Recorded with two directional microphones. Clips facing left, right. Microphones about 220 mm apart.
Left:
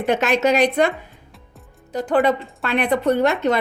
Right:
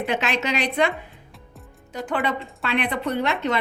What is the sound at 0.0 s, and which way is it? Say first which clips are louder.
Speech: left 7 dB; 45° left (ahead or behind).